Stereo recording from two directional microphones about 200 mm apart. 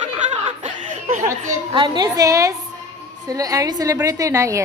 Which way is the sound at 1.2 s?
20° right (ahead or behind).